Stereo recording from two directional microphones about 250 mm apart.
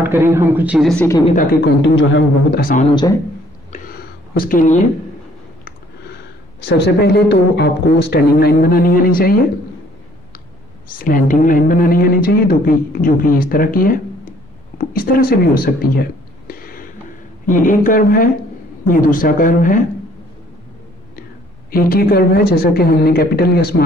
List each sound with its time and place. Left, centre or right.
0.0 s speech: centre
1.0 s speech: centre
1.8 s a woman's voice: left
2.9 s speech: centre
4.3 s a woman's voice: left
6.6 s a woman's voice: left
11.0 s a woman's voice: left
21.6 s a woman's voice: left